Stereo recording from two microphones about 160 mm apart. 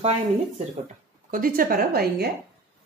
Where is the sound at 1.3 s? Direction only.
65° right (ahead or behind).